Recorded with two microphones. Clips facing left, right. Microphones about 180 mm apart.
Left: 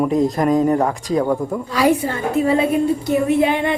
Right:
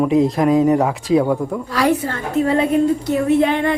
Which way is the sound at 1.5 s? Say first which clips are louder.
Left 1 dB; 5° left (ahead or behind).